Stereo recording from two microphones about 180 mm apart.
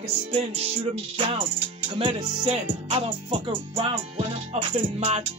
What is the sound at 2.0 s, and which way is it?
Music, 30° right (ahead or behind).